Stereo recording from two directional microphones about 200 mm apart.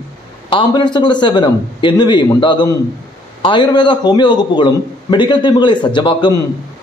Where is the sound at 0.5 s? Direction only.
25° left (ahead or behind).